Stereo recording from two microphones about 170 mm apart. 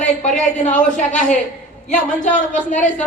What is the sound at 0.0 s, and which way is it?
A woman's voice, 45° left (ahead or behind).